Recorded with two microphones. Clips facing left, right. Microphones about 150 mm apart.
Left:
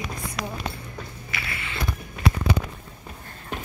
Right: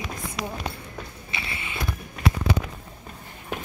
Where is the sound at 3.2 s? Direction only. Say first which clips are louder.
Right 4 dB; 15° right (ahead or behind).